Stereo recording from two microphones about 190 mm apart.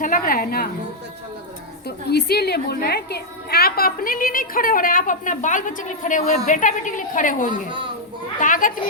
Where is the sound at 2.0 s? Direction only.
60° left (ahead or behind).